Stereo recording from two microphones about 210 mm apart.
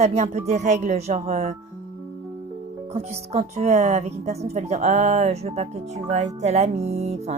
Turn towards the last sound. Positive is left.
turn(degrees=-30)  # may be behind; listen again after turning